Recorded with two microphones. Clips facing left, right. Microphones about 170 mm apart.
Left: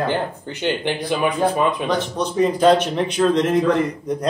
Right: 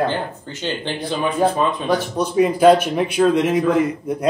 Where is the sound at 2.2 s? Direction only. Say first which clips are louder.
Right 2 dB; 10° right (ahead or behind).